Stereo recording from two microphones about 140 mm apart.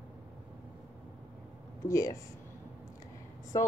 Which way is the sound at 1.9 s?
25° left (ahead or behind).